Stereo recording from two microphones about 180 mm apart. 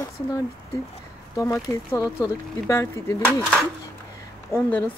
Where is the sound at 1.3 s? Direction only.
20° left (ahead or behind).